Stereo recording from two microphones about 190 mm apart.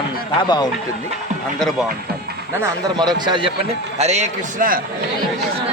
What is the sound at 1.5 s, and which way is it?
Speech, centre (ahead or behind).